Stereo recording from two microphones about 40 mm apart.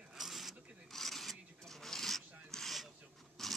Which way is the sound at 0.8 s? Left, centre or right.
Centre.